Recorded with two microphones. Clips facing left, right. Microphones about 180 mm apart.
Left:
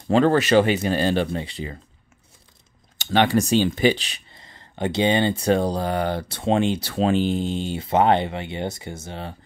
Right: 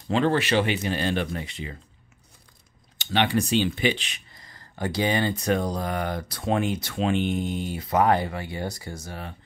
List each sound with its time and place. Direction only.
0.1 s speech: 45° left (ahead or behind)
3.0 s speech: 45° left (ahead or behind); by 9.3 s 25° left (ahead or behind)